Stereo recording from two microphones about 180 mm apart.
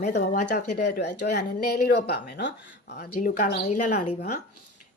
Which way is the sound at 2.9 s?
55° left (ahead or behind).